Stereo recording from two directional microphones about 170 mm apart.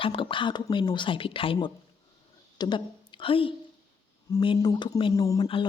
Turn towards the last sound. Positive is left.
turn(degrees=20)  # may be behind; listen again after turning